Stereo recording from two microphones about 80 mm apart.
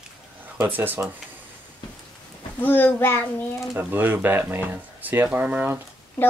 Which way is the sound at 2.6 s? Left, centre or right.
Left.